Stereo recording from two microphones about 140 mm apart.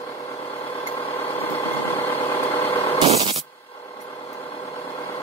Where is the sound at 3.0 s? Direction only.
45° right (ahead or behind).